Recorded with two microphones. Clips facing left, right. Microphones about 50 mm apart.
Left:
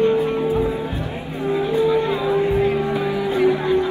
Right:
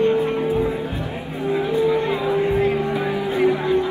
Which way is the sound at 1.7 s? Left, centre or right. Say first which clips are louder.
Left 1 dB; left.